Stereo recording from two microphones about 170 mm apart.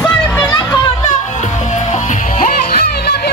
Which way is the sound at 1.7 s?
45° left (ahead or behind).